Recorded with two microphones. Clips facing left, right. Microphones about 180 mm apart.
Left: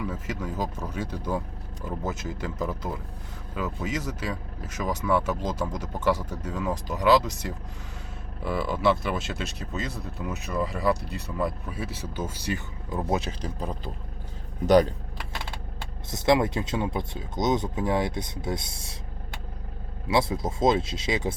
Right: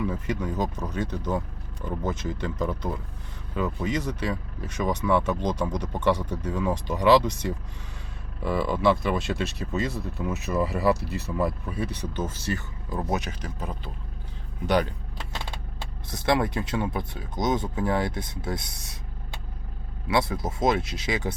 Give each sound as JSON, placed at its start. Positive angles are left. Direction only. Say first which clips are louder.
{"t": 0.0, "sound": "speech", "louder": "right 4 dB", "side_deg": 0}
{"t": 16.0, "sound": "speech", "louder": "left 2 dB", "side_deg": 20}
{"t": 20.1, "sound": "speech", "louder": "left 1 dB", "side_deg": 25}